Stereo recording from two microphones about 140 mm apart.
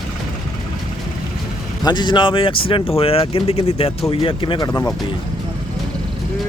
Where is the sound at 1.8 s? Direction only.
30° left (ahead or behind).